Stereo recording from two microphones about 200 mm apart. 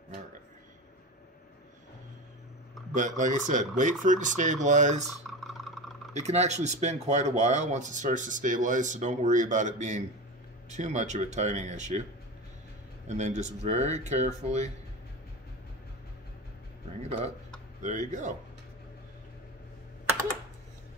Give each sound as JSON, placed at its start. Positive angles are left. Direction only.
{"t": 2.9, "sound": "speech", "side_deg": -40}
{"t": 5.0, "sound": "typing", "side_deg": 0}
{"t": 6.2, "sound": "speech", "side_deg": -35}
{"t": 13.2, "sound": "speech", "side_deg": -35}
{"t": 17.8, "sound": "speech", "side_deg": -40}